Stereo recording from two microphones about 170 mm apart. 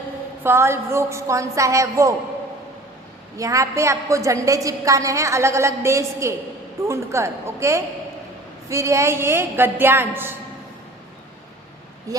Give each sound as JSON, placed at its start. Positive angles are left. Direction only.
{"t": 0.4, "sound": "a woman's voice", "side_deg": -15}
{"t": 3.3, "sound": "a woman's voice", "side_deg": -20}